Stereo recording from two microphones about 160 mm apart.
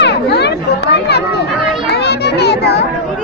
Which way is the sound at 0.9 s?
90° left.